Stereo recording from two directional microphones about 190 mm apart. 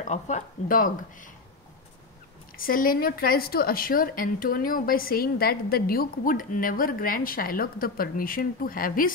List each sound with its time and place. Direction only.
0.0 s speech: 40° left (ahead or behind)
2.5 s speech: 45° left (ahead or behind)